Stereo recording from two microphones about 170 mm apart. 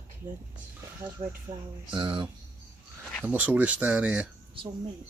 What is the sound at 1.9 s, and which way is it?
Speech, 25° right (ahead or behind).